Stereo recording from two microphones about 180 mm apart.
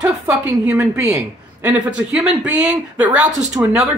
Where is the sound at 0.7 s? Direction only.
15° right (ahead or behind).